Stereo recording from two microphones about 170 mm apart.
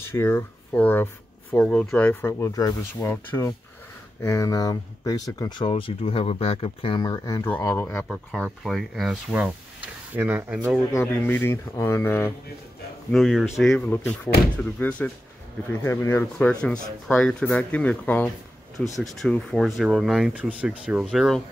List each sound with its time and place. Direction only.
0.0 s speech: 15° left (ahead or behind)
8.3 s speech: centre (ahead or behind)
10.9 s speech: 15° left (ahead or behind)
13.1 s speech: centre (ahead or behind); by 16.3 s 15° left (ahead or behind)
16.8 s speech: 5° left (ahead or behind)